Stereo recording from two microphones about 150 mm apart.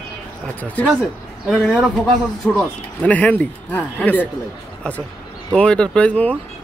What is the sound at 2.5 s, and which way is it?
Speech, 10° left (ahead or behind).